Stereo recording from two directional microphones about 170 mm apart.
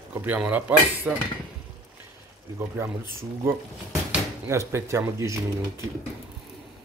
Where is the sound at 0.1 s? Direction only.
10° right (ahead or behind).